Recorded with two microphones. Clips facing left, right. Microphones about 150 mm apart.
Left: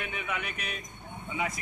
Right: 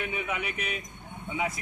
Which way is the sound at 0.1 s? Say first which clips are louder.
Right 3 dB; 10° right (ahead or behind).